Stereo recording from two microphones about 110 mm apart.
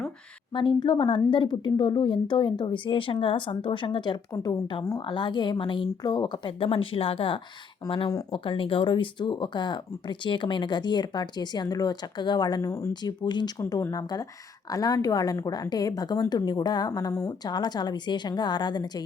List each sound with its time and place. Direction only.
0.5 s a woman's voice: 45° left (ahead or behind)
13.6 s a woman's voice: 30° left (ahead or behind)
17.1 s speech: 25° left (ahead or behind)
17.4 s a woman's voice: 40° left (ahead or behind)